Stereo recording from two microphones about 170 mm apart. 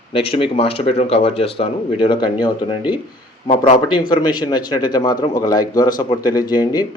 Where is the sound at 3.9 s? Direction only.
25° left (ahead or behind).